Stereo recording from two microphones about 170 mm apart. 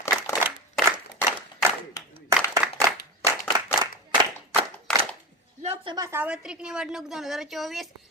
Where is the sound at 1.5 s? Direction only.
20° left (ahead or behind).